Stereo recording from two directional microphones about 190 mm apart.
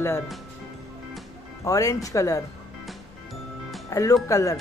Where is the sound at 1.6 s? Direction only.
15° left (ahead or behind).